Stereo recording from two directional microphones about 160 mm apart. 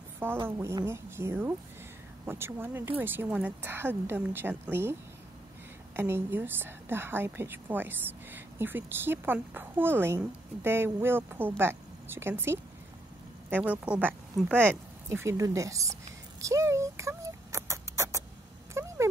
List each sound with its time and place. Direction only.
0.5 s a woman's voice: 20° right (ahead or behind)
5.9 s a woman's voice: 15° right (ahead or behind)
18.7 s a sound: 15° right (ahead or behind)